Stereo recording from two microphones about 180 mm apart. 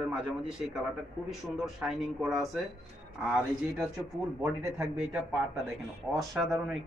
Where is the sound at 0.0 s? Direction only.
5° right (ahead or behind).